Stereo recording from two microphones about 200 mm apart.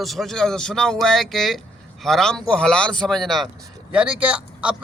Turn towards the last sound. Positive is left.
turn(degrees=-5)  # may be behind; listen again after turning